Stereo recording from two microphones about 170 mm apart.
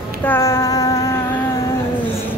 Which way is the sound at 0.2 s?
15° left (ahead or behind).